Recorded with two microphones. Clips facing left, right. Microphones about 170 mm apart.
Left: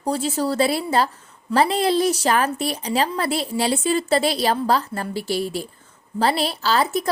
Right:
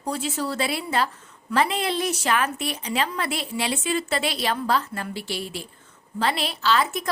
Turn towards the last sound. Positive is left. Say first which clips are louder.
# left 2 dB
turn(degrees=35)  # may be behind; listen again after turning